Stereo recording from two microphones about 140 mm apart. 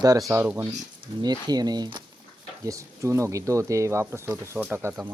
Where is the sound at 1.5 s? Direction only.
30° right (ahead or behind).